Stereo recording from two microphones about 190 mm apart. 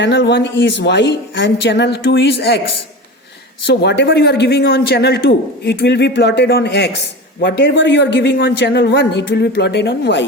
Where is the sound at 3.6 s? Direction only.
65° left (ahead or behind).